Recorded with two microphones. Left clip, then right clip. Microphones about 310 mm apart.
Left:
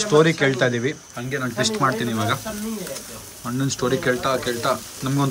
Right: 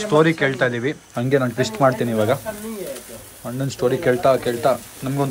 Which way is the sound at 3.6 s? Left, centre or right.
Centre.